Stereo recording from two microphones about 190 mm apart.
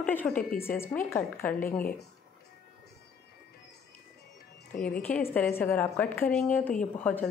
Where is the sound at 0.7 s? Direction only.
10° left (ahead or behind).